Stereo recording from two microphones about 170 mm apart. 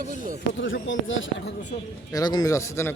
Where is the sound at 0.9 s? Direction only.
90° left.